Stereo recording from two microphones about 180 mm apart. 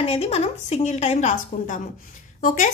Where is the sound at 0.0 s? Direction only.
35° left (ahead or behind).